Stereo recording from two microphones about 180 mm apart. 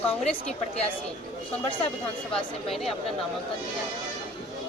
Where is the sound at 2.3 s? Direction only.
Centre (ahead or behind).